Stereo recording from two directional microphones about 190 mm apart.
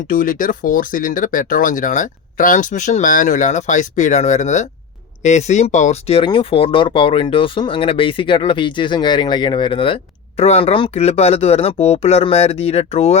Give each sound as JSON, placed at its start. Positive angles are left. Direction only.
{"t": 0.1, "sound": "speech", "side_deg": 45}